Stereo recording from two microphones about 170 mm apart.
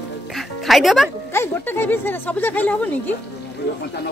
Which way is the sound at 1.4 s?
10° left (ahead or behind).